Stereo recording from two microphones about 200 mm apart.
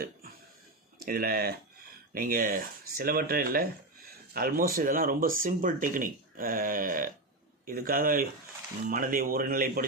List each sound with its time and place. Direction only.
0.9 s speech: 45° right (ahead or behind)